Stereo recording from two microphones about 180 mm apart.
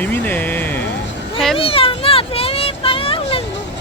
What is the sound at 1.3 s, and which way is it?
Speech, centre (ahead or behind).